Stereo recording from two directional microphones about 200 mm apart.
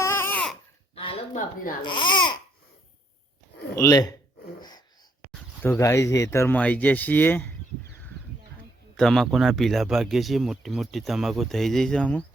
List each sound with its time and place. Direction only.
0.0 s babbling: 10° left (ahead or behind)
0.9 s a sound: 30° left (ahead or behind)
1.8 s speech: 25° left (ahead or behind)
3.8 s speech: 15° left (ahead or behind)
5.6 s speech: 10° left (ahead or behind)
9.0 s speech: centre (ahead or behind)